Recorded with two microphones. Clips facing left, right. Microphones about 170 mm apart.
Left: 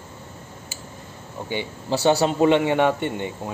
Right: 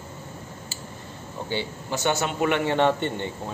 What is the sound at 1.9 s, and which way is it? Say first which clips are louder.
Speech: left 7 dB; 30° left (ahead or behind).